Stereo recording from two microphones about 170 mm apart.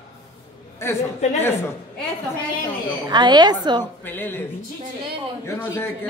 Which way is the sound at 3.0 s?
25° right (ahead or behind).